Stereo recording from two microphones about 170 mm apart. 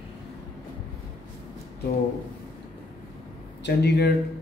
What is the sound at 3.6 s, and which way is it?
Speech, 80° left.